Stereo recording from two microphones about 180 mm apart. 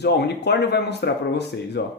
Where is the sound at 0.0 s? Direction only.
65° left (ahead or behind).